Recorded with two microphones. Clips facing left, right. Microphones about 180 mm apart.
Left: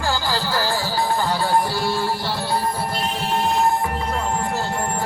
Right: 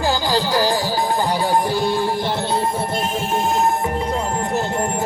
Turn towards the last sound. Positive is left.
turn(degrees=-20)  # may be behind; listen again after turning